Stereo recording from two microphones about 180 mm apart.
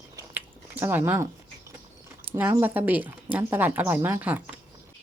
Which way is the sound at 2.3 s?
10° right (ahead or behind).